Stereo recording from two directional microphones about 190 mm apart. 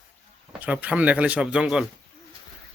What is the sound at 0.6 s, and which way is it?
Speech, 5° right (ahead or behind).